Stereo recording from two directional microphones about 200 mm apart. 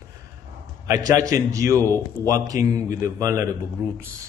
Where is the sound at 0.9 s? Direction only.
20° right (ahead or behind).